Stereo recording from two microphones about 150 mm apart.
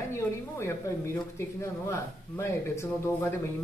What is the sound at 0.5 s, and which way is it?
A woman's voice, 15° left (ahead or behind).